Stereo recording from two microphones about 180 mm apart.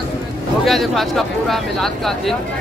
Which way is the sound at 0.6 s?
Centre (ahead or behind).